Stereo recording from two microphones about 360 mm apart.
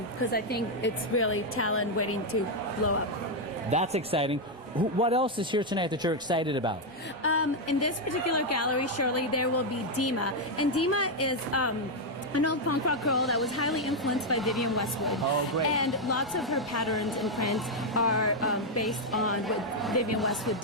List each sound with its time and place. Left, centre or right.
0.2 s a woman's voice: left
3.7 s speech: centre
7.2 s a woman's voice: left
13.1 s speech: centre